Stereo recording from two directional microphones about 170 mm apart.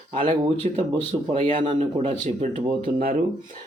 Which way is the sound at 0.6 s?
45° right (ahead or behind).